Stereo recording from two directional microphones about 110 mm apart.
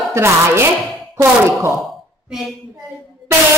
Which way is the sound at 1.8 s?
5° right (ahead or behind).